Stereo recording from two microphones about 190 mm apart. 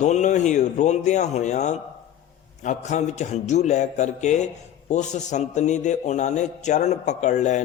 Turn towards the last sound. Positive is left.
turn(degrees=40)  # may be behind; listen again after turning